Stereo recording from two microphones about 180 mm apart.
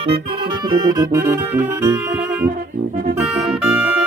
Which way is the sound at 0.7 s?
20° right (ahead or behind).